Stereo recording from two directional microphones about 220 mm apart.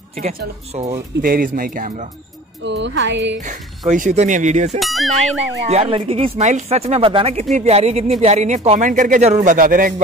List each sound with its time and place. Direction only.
0.2 s speech: 35° right (ahead or behind)
2.6 s speech: 55° right (ahead or behind)
3.4 s speech: 35° right (ahead or behind)
4.7 s speech: centre (ahead or behind)
5.7 s speech: 25° right (ahead or behind)